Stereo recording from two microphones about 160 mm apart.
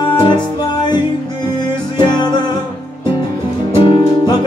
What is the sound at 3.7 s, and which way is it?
Music, 30° left (ahead or behind).